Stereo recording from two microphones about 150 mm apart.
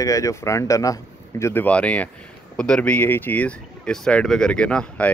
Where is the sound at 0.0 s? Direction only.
20° left (ahead or behind).